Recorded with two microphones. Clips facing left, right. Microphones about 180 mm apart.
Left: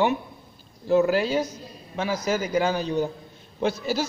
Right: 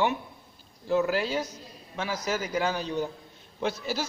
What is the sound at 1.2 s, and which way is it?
Speech, 15° left (ahead or behind).